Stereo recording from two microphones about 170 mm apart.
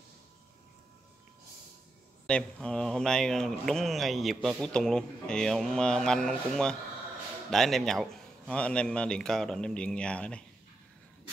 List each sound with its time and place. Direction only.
2.2 s speech: 5° left (ahead or behind)